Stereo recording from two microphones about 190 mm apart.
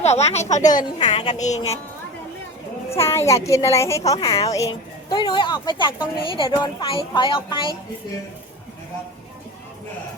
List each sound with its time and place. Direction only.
0.0 s a woman's voice: 35° left (ahead or behind)
0.9 s a woman's voice: 25° left (ahead or behind)
1.3 s a woman's voice: 40° left (ahead or behind)
3.1 s a woman's voice: 15° left (ahead or behind)